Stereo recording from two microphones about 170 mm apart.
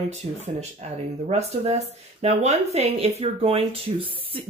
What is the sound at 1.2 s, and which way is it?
Speech, 40° right (ahead or behind).